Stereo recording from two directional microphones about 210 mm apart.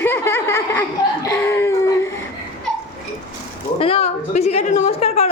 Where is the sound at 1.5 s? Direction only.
10° left (ahead or behind).